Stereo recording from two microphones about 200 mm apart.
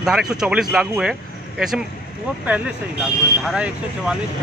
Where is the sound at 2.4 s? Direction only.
5° right (ahead or behind).